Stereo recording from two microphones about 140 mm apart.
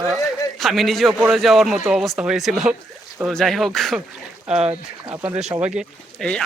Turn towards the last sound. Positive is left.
turn(degrees=-5)  # may be behind; listen again after turning